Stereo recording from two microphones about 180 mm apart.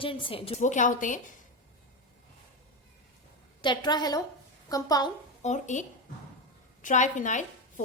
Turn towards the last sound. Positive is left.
turn(degrees=45)  # may be behind; listen again after turning